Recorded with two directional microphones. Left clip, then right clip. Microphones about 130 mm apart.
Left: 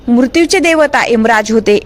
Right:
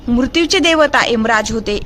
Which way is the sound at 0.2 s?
40° left (ahead or behind).